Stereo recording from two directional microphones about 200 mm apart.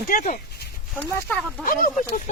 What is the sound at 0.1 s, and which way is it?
Speech, 40° left (ahead or behind).